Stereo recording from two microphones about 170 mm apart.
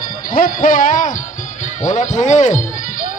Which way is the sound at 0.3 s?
50° left (ahead or behind).